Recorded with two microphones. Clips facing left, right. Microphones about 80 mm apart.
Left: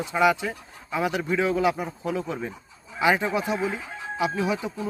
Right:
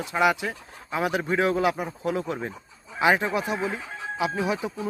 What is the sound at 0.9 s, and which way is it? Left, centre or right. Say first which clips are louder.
Speech: even; right.